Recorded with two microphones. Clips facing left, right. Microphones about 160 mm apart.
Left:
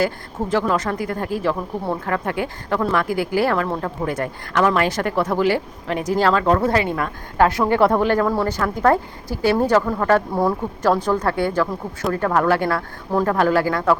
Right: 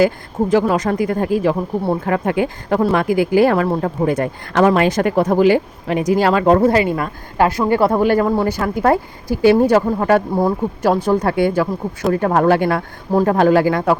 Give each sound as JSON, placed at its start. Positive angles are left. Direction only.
{"t": 0.0, "sound": "speech", "side_deg": -15}